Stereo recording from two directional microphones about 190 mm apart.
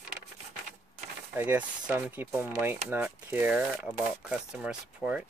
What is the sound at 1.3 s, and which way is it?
Speech, 10° right (ahead or behind).